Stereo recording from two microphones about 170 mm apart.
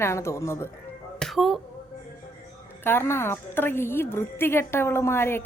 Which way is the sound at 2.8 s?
15° left (ahead or behind).